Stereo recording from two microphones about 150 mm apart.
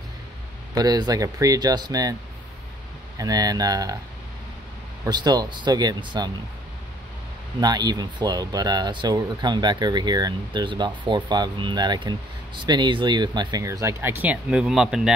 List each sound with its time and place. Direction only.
0.7 s speech: 25° right (ahead or behind)
3.2 s speech: 25° right (ahead or behind)
5.0 s speech: 30° right (ahead or behind)
7.6 s speech: 25° right (ahead or behind); by 15.1 s 5° right (ahead or behind)